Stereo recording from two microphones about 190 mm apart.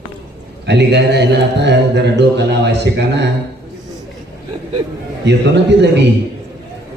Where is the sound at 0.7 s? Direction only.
65° right (ahead or behind).